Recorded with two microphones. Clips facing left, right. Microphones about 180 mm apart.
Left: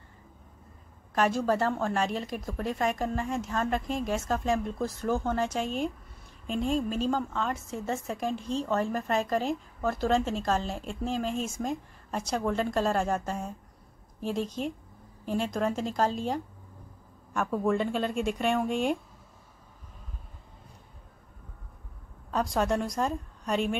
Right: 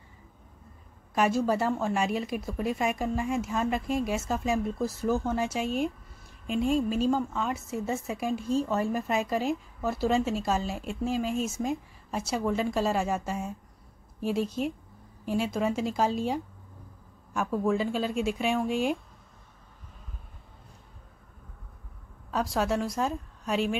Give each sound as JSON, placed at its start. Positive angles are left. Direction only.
{"t": 1.1, "sound": "a woman's voice", "side_deg": -10}
{"t": 22.3, "sound": "a woman's voice", "side_deg": -5}